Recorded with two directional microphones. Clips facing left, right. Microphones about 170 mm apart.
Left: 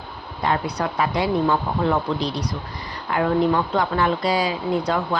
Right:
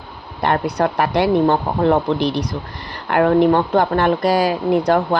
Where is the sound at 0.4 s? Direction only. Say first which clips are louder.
Right 5 dB; 55° right (ahead or behind).